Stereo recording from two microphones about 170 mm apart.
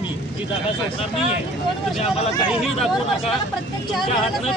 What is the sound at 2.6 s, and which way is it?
Speech, centre (ahead or behind).